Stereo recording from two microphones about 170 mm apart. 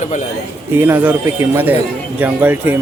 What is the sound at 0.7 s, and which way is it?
Speech, 10° right (ahead or behind).